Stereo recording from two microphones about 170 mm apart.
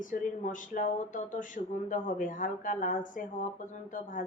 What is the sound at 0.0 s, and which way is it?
Speech, 50° left (ahead or behind).